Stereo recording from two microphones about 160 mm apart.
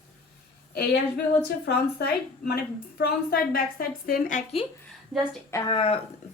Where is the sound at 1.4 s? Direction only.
90° left.